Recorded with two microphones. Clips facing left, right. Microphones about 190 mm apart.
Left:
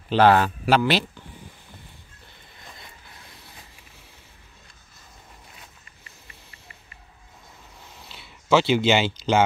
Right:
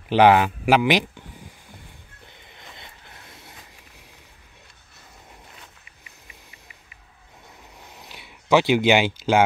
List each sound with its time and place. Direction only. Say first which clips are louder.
0.1 s speech: right 2 dB; 15° right (ahead or behind)
2.8 s vehicle: right 1 dB; 25° right (ahead or behind)
5.9 s vehicle: even; 10° right (ahead or behind)
8.0 s a sound: right 2 dB; 15° right (ahead or behind)